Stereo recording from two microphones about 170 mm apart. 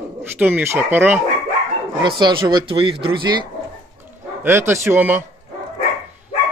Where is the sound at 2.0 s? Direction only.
25° right (ahead or behind).